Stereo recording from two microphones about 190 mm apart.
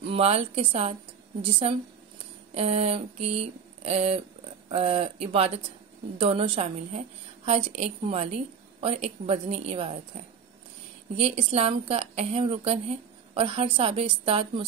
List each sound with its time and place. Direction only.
0.0 s a woman's voice: 30° right (ahead or behind)
11.1 s a woman's voice: 30° right (ahead or behind)